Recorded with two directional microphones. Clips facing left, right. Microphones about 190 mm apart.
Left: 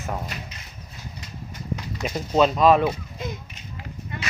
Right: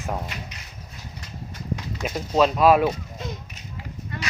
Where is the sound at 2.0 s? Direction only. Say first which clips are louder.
Left 1 dB; centre (ahead or behind).